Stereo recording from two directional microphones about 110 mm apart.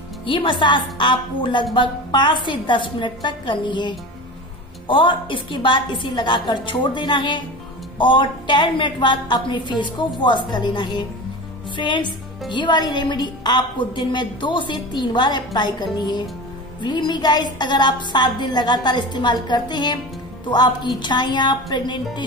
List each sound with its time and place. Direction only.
0.2 s a woman's voice: 50° left (ahead or behind)